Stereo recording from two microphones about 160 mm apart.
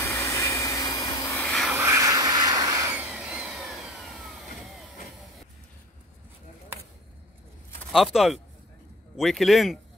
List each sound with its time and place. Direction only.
0.0 s vehicle: 15° left (ahead or behind)
1.5 s vehicle: centre (ahead or behind)
1.8 s a sound: 20° right (ahead or behind)
2.9 s vehicle: 5° right (ahead or behind)
7.9 s a man's voice: centre (ahead or behind)